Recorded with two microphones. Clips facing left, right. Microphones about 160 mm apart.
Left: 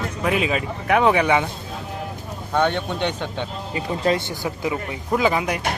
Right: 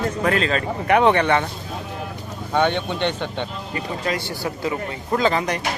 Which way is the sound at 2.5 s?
Centre (ahead or behind).